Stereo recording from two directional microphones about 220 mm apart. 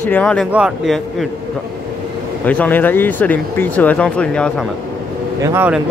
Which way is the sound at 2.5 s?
5° left (ahead or behind).